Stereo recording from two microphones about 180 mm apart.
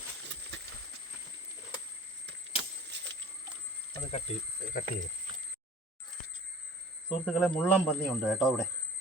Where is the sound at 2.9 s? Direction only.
75° right (ahead or behind).